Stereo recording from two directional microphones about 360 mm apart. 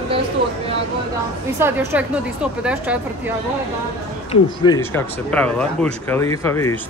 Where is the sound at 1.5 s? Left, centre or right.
Centre.